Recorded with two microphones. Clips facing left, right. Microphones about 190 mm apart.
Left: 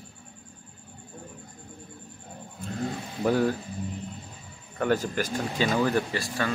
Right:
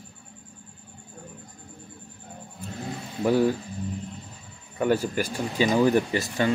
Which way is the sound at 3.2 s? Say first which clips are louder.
Right 2 dB; 10° right (ahead or behind).